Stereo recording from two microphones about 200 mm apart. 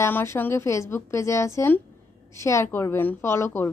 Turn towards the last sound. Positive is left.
turn(degrees=10)  # may be behind; listen again after turning